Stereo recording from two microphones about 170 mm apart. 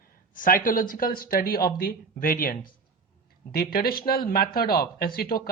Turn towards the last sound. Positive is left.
turn(degrees=60)  # may be behind; listen again after turning